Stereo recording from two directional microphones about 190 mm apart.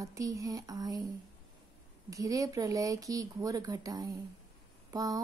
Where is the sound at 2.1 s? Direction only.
20° right (ahead or behind).